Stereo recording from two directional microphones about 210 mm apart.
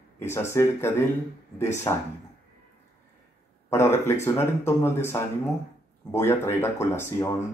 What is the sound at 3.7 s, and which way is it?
Speech, 10° left (ahead or behind).